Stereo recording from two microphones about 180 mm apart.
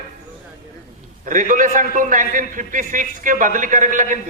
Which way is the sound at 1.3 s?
45° right (ahead or behind).